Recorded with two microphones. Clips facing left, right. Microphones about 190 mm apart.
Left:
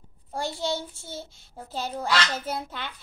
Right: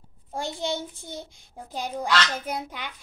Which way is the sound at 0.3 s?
20° right (ahead or behind).